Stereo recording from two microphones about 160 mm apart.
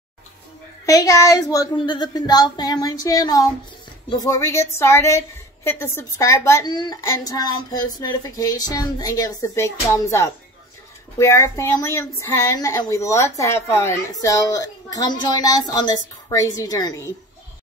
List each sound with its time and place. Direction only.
0.8 s child singing: 20° left (ahead or behind)
4.2 s a woman's voice: 20° left (ahead or behind)
6.7 s child singing: 25° left (ahead or behind)
11.1 s a woman's voice: 20° left (ahead or behind)
14.2 s child singing: 20° left (ahead or behind)